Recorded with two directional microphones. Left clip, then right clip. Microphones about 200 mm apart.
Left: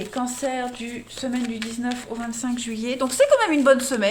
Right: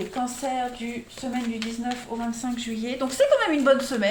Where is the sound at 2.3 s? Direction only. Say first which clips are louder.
Left 2 dB; 40° left (ahead or behind).